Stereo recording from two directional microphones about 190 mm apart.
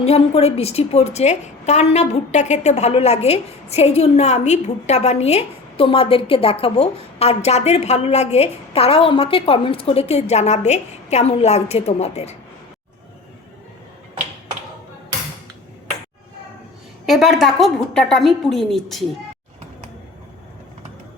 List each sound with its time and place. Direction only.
0.0 s a woman's voice: 35° left (ahead or behind)
17.1 s a woman's voice: centre (ahead or behind)